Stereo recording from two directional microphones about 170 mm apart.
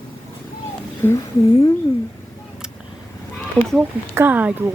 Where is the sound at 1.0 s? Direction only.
15° left (ahead or behind).